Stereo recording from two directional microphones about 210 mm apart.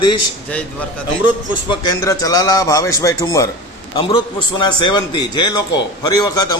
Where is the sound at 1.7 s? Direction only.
15° left (ahead or behind).